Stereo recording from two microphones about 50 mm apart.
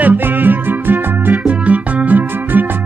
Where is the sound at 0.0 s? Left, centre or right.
Right.